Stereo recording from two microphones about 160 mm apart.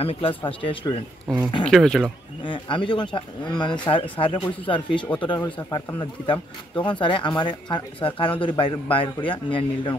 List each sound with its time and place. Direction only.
0.0 s speech: 35° left (ahead or behind)
1.3 s speech: 5° left (ahead or behind)
2.4 s speech: 30° left (ahead or behind)
6.3 s speech: 10° left (ahead or behind)
6.9 s speech: 30° left (ahead or behind)